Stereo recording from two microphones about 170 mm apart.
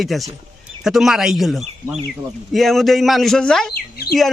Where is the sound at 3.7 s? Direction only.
70° left (ahead or behind).